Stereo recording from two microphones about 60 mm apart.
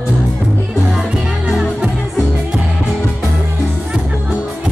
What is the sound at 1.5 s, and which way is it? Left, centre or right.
Music, centre.